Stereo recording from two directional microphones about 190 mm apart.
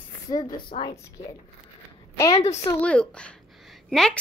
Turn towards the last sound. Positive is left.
turn(degrees=0)  # may be behind; listen again after turning